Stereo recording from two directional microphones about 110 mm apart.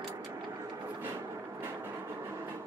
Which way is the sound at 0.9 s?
25° right (ahead or behind).